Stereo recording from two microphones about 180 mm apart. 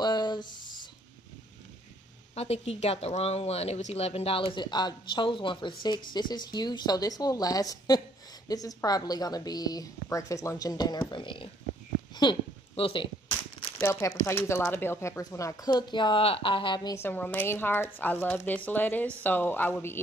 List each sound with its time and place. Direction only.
0.0 s a sound: 25° left (ahead or behind)
2.3 s speech: 35° left (ahead or behind)
12.2 s crumpling: 30° left (ahead or behind)
13.7 s speech: 15° left (ahead or behind)